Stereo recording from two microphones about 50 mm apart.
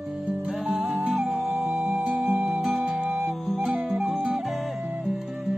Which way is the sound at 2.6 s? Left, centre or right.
Centre.